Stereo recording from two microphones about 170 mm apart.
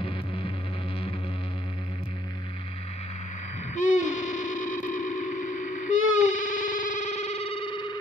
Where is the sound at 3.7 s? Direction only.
50° left (ahead or behind); by 7.8 s 30° left (ahead or behind).